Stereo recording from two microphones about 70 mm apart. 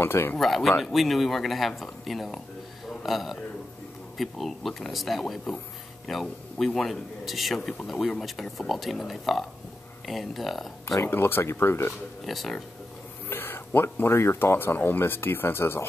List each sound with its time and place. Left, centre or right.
0.0 s speech: left
0.4 s a man's voice: centre
10.9 s speech: left
12.3 s a man's voice: centre
13.3 s speech: left